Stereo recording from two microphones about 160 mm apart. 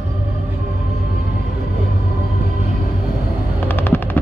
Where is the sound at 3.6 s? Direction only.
15° left (ahead or behind).